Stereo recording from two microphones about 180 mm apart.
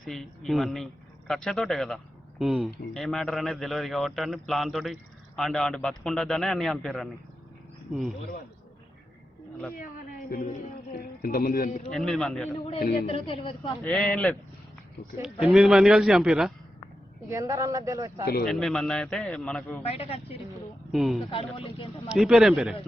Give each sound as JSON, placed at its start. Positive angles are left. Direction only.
{"t": 0.0, "sound": "a man's voice", "side_deg": 0}
{"t": 7.9, "sound": "speech", "side_deg": -10}
{"t": 9.7, "sound": "a sound", "side_deg": 50}
{"t": 11.0, "sound": "a man's voice", "side_deg": 55}
{"t": 11.9, "sound": "a man's voice", "side_deg": 0}
{"t": 13.1, "sound": "a woman's voice", "side_deg": 30}
{"t": 13.8, "sound": "a man's voice", "side_deg": 5}
{"t": 17.2, "sound": "speech", "side_deg": -15}
{"t": 18.4, "sound": "a man's voice", "side_deg": 0}
{"t": 19.9, "sound": "a woman's voice", "side_deg": 35}
{"t": 20.9, "sound": "a man's voice", "side_deg": 0}
{"t": 21.2, "sound": "speech", "side_deg": 30}
{"t": 22.1, "sound": "a man's voice", "side_deg": 0}